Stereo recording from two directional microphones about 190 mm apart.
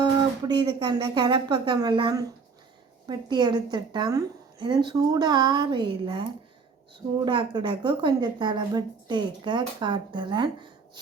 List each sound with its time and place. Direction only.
0.0 s a woman's voice: 20° right (ahead or behind)
7.3 s a woman's voice: 25° right (ahead or behind)